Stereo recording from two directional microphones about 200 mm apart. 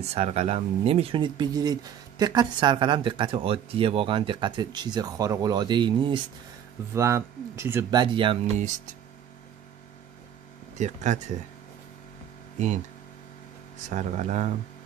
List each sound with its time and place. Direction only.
0.0 s speech: 30° right (ahead or behind)
8.5 s speech: 40° right (ahead or behind)
13.7 s speech: 35° right (ahead or behind)